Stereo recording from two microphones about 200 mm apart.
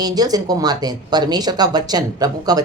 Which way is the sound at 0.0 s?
20° right (ahead or behind).